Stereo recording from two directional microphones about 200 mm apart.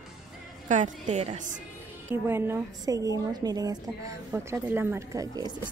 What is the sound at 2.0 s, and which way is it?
A woman's voice, 10° right (ahead or behind).